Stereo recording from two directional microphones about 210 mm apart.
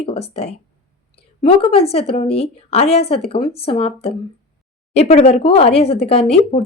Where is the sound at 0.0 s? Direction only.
30° left (ahead or behind).